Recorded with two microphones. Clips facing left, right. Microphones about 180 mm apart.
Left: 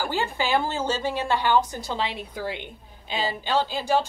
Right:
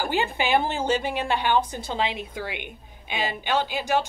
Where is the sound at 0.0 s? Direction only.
20° right (ahead or behind).